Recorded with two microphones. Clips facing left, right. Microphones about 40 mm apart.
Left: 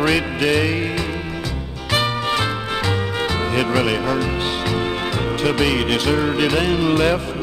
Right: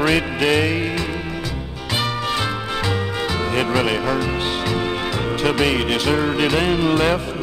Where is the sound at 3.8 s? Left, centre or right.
Centre.